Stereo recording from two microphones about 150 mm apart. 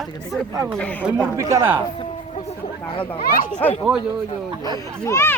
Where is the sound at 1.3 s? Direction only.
20° right (ahead or behind).